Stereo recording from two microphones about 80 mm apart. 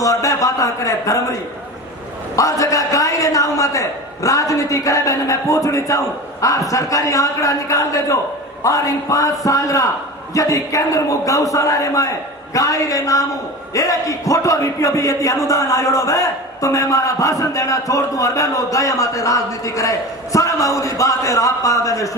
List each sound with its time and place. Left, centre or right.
0.0 s a man's voice: left
2.3 s speech: left